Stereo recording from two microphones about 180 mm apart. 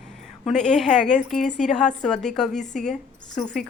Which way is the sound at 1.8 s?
5° left (ahead or behind).